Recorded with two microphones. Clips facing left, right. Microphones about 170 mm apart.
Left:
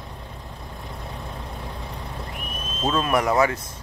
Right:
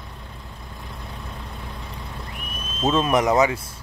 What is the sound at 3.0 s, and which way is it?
Speech, 20° right (ahead or behind).